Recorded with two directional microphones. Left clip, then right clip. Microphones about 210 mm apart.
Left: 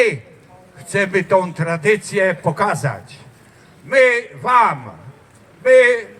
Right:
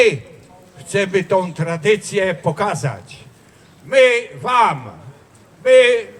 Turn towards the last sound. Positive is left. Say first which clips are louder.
# even
turn(degrees=-20)  # may be behind; listen again after turning